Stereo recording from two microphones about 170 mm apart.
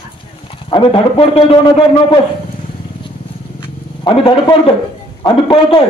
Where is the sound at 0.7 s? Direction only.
30° left (ahead or behind).